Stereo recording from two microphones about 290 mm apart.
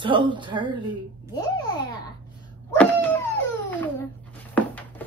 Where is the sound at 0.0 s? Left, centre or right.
Centre.